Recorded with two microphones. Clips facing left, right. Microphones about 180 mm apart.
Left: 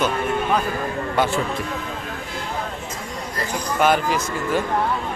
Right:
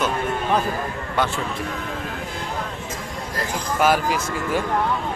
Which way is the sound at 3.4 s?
5° right (ahead or behind).